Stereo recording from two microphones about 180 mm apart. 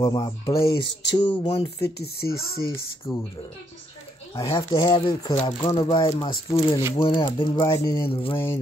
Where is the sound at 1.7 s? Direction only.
65° left (ahead or behind).